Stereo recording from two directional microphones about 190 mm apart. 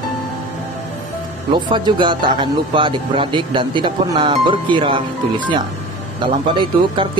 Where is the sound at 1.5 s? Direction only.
25° right (ahead or behind).